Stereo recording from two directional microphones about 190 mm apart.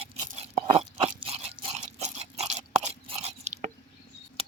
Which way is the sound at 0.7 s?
30° right (ahead or behind).